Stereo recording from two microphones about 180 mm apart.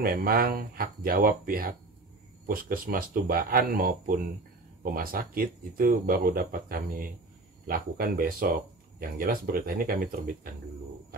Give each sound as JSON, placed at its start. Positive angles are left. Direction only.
{"t": 0.0, "sound": "speech", "side_deg": -55}